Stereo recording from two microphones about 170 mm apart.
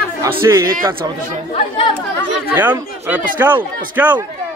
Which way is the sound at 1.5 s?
30° left (ahead or behind).